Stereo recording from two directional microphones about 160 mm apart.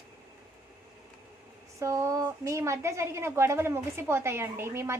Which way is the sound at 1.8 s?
20° right (ahead or behind).